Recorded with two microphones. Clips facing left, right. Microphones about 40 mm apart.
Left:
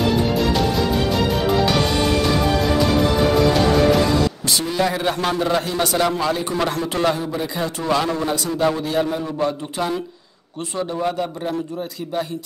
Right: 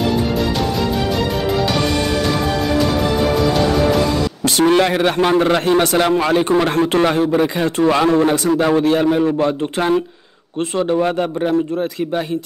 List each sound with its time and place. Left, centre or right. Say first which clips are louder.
4.5 s a man's voice: right 7 dB; right
8.2 s a man's voice: right 6 dB; right